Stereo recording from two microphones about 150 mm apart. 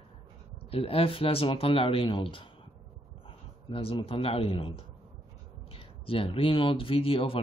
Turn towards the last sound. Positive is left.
turn(degrees=35)  # may be behind; listen again after turning